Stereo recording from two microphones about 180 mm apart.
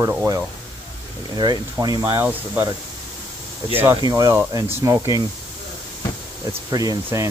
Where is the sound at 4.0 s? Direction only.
20° right (ahead or behind).